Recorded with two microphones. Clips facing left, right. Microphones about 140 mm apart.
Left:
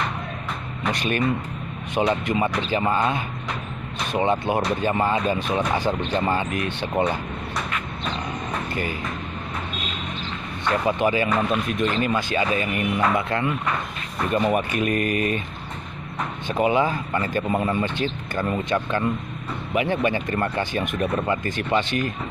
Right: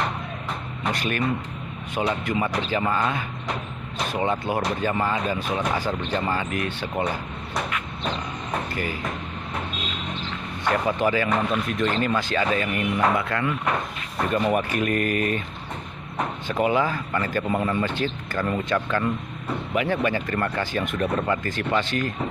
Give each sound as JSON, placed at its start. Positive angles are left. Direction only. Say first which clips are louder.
{"t": 0.9, "sound": "speech", "louder": "left 3 dB", "side_deg": 20}
{"t": 10.9, "sound": "speech", "louder": "left 3 dB", "side_deg": 20}
{"t": 16.4, "sound": "speech", "louder": "left 2 dB", "side_deg": 20}